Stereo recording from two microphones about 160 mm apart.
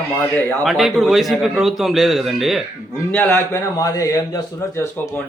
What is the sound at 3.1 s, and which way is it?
A man's voice, 15° left (ahead or behind).